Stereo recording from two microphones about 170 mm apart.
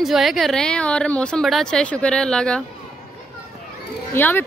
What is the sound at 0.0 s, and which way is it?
Speech, centre (ahead or behind).